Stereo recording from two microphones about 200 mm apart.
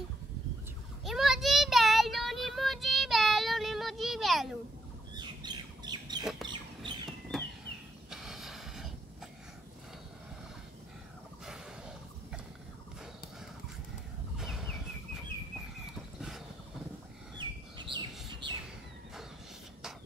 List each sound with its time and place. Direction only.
1.0 s child singing: centre (ahead or behind)
5.1 s bird: 20° right (ahead or behind)
6.4 s chicken: 25° right (ahead or behind)
7.1 s chicken: centre (ahead or behind)
8.1 s a sound: centre (ahead or behind)
11.4 s snort: 5° right (ahead or behind)
14.4 s fowl: centre (ahead or behind)
16.2 s a sound: centre (ahead or behind)
17.4 s bird: 25° right (ahead or behind)